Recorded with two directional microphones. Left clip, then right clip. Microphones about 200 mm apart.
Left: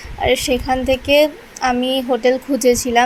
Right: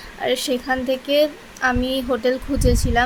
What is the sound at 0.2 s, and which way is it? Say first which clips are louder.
Speech: left 5 dB; 10° left (ahead or behind).